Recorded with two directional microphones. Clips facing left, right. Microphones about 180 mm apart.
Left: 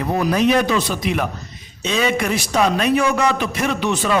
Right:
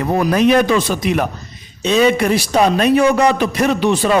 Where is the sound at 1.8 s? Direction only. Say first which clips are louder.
Right 6 dB; 35° right (ahead or behind).